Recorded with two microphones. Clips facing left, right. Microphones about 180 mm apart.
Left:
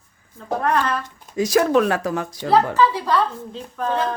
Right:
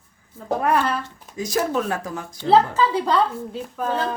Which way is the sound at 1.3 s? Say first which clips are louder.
Left 6 dB; 80° left.